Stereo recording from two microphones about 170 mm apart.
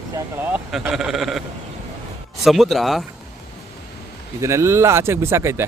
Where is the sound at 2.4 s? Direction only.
Centre (ahead or behind).